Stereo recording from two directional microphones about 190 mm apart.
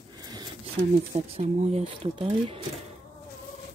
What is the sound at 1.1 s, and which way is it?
Speech, 35° right (ahead or behind).